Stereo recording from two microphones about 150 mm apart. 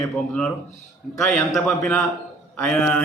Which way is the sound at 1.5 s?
5° left (ahead or behind).